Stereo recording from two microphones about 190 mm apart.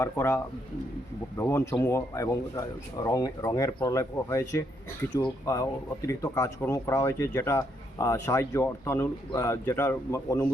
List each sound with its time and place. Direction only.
0.0 s speech: 15° left (ahead or behind)